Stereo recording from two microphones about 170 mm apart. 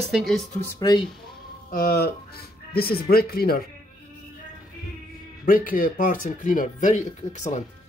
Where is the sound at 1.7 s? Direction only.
65° left (ahead or behind).